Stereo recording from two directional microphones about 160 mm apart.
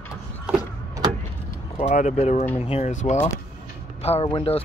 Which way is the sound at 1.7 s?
45° left (ahead or behind).